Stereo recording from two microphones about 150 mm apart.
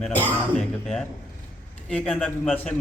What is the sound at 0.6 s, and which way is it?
Speech, 5° left (ahead or behind).